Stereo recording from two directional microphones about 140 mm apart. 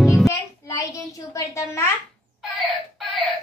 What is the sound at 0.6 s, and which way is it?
A child's voice, 20° left (ahead or behind).